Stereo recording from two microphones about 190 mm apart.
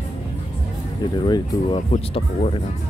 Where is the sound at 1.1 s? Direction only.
25° left (ahead or behind).